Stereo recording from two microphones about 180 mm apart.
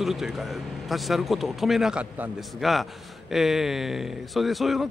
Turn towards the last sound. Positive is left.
turn(degrees=0)  # may be behind; listen again after turning